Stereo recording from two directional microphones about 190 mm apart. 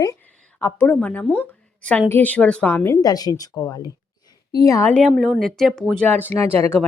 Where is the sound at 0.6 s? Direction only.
10° left (ahead or behind).